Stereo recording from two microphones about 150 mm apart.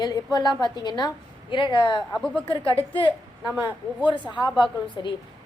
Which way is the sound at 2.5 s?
35° left (ahead or behind).